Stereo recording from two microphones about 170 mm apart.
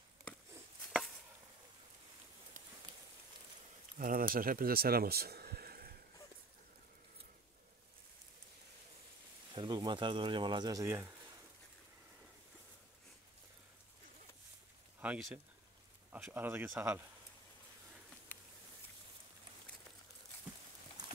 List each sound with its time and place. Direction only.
4.0 s speech: 55° right (ahead or behind)
9.5 s speech: 25° right (ahead or behind)
15.0 s speech: 10° right (ahead or behind)